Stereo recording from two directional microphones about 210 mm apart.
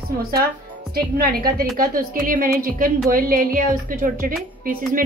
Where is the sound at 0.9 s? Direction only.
45° right (ahead or behind).